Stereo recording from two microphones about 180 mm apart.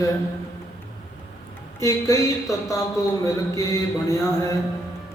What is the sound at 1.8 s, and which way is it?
A man's voice, 15° left (ahead or behind).